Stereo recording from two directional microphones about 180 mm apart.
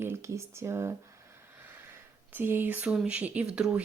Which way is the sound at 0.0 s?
15° right (ahead or behind).